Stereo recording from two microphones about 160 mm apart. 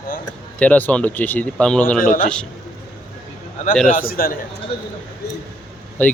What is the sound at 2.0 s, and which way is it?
Speech, 55° left (ahead or behind).